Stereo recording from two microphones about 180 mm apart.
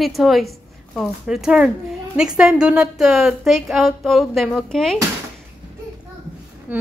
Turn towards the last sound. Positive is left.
turn(degrees=-10)  # may be behind; listen again after turning